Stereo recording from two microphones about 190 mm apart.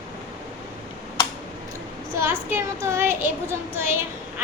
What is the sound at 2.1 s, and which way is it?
Child singing, 15° right (ahead or behind).